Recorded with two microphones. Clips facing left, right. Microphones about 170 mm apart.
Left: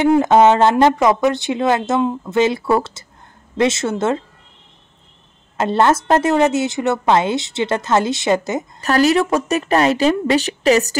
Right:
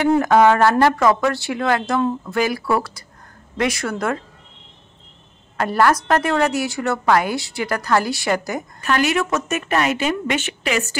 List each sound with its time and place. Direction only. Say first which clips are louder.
0.2 s a woman's voice: left 2 dB; 20° left (ahead or behind)
5.6 s a woman's voice: left 2 dB; 25° left (ahead or behind)
8.8 s a woman's voice: left 5 dB; 35° left (ahead or behind)